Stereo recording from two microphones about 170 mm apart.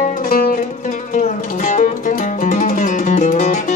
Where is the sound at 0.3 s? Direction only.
60° left (ahead or behind).